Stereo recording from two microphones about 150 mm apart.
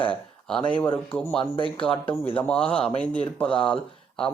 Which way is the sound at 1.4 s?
35° left (ahead or behind).